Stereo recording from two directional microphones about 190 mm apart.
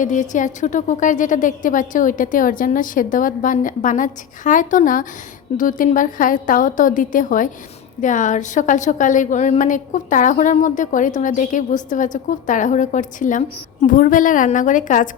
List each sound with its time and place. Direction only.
0.0 s a woman's voice: 40° left (ahead or behind)